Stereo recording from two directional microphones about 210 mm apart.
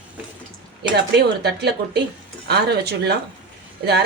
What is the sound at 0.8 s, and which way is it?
A woman's voice, 50° right (ahead or behind).